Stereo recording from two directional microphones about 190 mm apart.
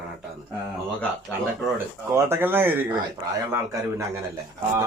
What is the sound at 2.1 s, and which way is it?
Speech, 10° right (ahead or behind).